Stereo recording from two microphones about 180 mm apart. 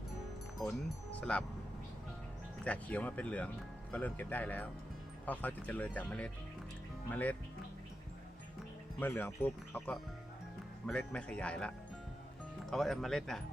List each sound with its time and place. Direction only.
0.6 s speech: 5° left (ahead or behind)
2.6 s speech: 10° left (ahead or behind)
9.0 s speech: 10° left (ahead or behind)
12.7 s speech: centre (ahead or behind)